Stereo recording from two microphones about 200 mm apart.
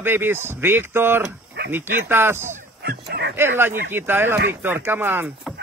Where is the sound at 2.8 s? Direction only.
55° right (ahead or behind).